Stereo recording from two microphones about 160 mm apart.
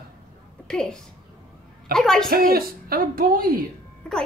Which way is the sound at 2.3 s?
65° right (ahead or behind).